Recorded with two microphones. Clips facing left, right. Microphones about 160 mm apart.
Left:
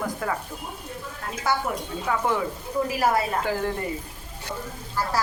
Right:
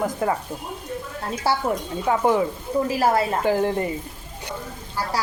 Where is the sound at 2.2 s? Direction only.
20° right (ahead or behind).